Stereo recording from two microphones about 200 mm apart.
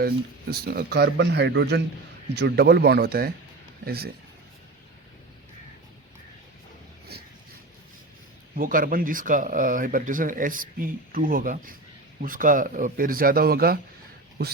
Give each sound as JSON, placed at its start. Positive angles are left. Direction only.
{"t": 0.0, "sound": "speech", "side_deg": -50}
{"t": 8.5, "sound": "speech", "side_deg": -45}